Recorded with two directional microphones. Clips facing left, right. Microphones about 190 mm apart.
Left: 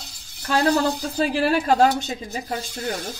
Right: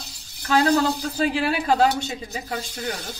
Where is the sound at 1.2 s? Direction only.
45° left (ahead or behind).